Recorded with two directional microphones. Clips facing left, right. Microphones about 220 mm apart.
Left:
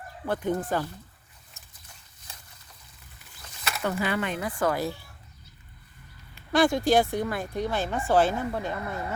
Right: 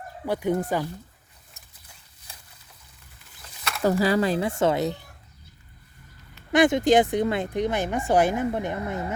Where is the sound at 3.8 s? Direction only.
35° right (ahead or behind); by 5.0 s 20° right (ahead or behind).